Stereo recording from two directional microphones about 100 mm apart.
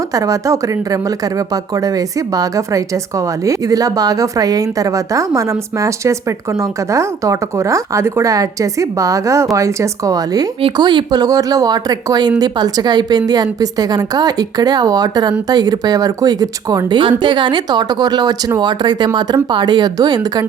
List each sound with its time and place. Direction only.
0.1 s a woman's voice: 35° right (ahead or behind)
17.0 s speech: 55° right (ahead or behind)